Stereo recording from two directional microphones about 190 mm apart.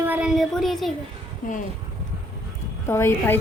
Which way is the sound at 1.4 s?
45° left (ahead or behind).